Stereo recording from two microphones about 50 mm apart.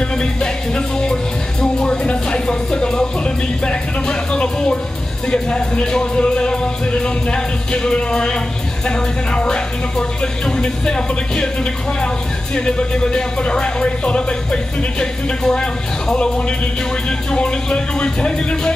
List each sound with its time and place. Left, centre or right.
0.2 s music: centre
12.5 s music: centre